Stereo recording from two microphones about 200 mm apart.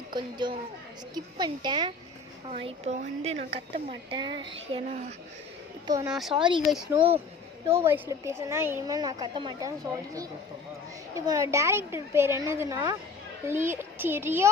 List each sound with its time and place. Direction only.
0.1 s a woman's voice: 20° right (ahead or behind)
6.1 s speech: centre (ahead or behind)
6.3 s a woman's voice: 25° right (ahead or behind)
6.7 s a woman's voice: 5° right (ahead or behind)